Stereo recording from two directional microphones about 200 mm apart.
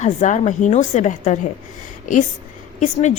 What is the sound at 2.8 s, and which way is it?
Speech, 35° left (ahead or behind).